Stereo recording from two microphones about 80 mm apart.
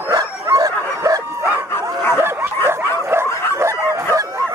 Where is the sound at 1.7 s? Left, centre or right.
Left.